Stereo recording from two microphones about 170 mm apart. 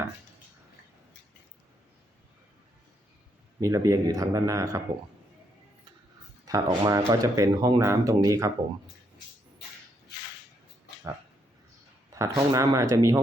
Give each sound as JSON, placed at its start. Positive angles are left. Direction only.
{"t": 3.6, "sound": "speech", "side_deg": -20}
{"t": 6.5, "sound": "speech", "side_deg": -20}
{"t": 12.1, "sound": "speech", "side_deg": -20}